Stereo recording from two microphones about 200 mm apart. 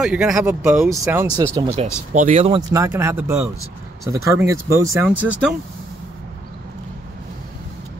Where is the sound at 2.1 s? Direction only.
35° right (ahead or behind).